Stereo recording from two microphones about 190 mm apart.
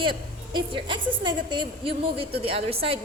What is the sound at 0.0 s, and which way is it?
A woman's voice, 25° right (ahead or behind).